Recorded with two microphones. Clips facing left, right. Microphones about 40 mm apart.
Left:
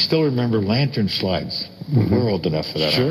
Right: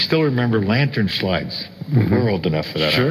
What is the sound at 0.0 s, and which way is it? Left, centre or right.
Speech, right.